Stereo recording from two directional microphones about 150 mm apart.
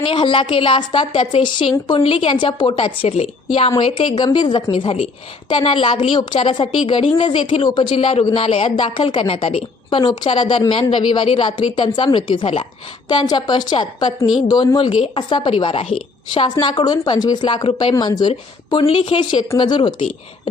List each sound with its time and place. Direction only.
0.0 s a woman's voice: 35° left (ahead or behind)